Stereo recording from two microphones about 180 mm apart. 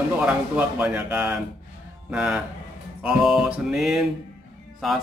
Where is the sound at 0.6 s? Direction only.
10° right (ahead or behind).